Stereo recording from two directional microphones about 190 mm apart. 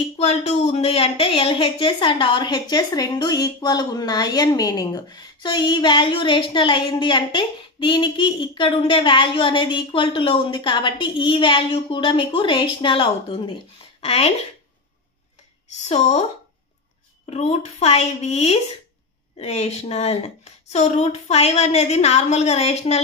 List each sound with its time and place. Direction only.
0.2 s a woman's voice: 35° left (ahead or behind)
15.9 s a woman's voice: 35° left (ahead or behind)
17.3 s a woman's voice: 35° left (ahead or behind)